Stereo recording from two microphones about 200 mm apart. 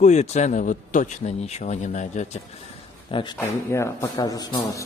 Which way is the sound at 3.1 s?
20° left (ahead or behind).